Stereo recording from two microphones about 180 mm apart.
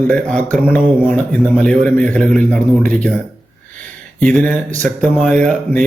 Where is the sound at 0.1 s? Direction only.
5° left (ahead or behind).